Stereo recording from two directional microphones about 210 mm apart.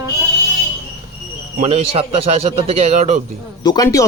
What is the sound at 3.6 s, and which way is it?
Speech, 20° left (ahead or behind).